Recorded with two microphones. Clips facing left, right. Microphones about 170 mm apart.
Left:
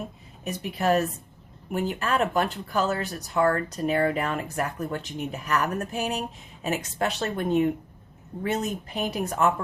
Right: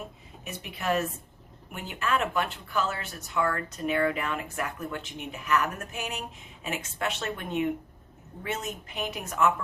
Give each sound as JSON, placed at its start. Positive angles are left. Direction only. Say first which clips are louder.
{"t": 0.4, "sound": "speech", "louder": "left 6 dB", "side_deg": 40}